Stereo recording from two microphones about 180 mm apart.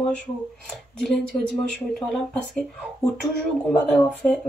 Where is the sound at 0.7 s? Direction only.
Centre (ahead or behind).